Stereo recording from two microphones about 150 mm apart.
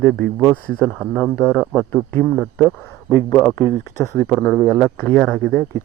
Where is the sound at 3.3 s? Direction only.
20° left (ahead or behind).